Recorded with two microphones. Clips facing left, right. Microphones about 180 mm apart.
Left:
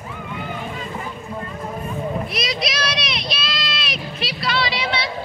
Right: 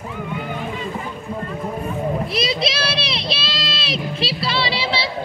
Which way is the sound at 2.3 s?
30° right (ahead or behind).